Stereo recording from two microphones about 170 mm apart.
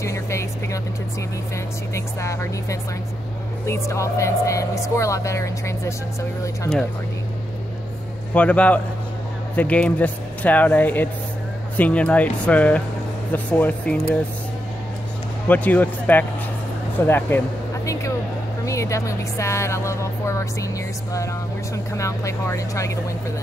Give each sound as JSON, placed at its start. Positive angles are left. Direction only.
{"t": 0.0, "sound": "vehicle", "side_deg": 15}
{"t": 2.0, "sound": "speech", "side_deg": 15}
{"t": 8.4, "sound": "speech", "side_deg": 10}
{"t": 15.4, "sound": "speech", "side_deg": 10}
{"t": 18.7, "sound": "speech", "side_deg": 20}
{"t": 21.7, "sound": "speech", "side_deg": 20}